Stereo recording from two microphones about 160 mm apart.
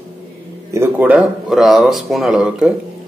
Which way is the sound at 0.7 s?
10° right (ahead or behind).